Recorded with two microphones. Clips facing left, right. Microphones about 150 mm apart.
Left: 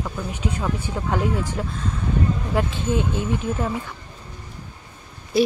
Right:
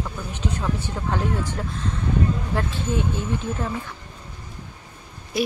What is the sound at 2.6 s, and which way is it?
Speech, 15° left (ahead or behind).